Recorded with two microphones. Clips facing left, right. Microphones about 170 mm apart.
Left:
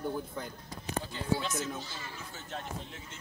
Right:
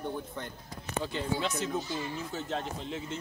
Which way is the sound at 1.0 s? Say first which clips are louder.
Right 2 dB; 65° right (ahead or behind).